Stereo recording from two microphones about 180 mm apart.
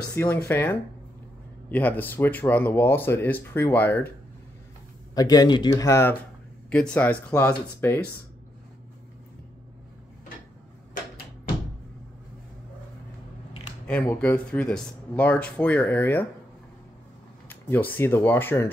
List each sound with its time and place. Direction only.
0.1 s speech: 15° left (ahead or behind)
5.1 s speech: 20° left (ahead or behind)
14.1 s speech: 10° left (ahead or behind)
17.5 s speech: 10° left (ahead or behind)